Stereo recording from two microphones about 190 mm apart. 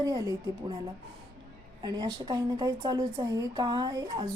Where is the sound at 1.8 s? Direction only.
20° right (ahead or behind).